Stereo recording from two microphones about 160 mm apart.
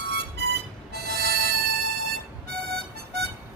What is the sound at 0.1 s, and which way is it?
Music, 90° right.